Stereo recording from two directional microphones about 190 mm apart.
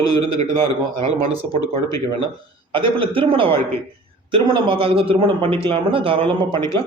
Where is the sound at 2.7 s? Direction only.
25° right (ahead or behind).